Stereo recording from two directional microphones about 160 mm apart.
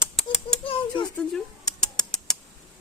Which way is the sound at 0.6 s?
35° left (ahead or behind).